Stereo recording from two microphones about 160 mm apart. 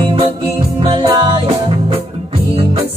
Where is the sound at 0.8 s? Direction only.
35° right (ahead or behind).